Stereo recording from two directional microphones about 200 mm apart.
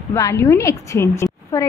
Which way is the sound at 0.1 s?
15° left (ahead or behind).